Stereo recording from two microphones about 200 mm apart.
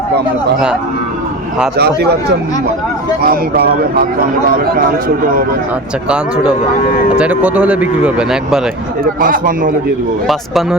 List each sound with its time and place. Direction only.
1.8 s speech: 55° right (ahead or behind)
3.2 s speech: 50° right (ahead or behind)
6.1 s speech: 5° right (ahead or behind)
9.2 s speech: 45° right (ahead or behind)
10.2 s speech: centre (ahead or behind)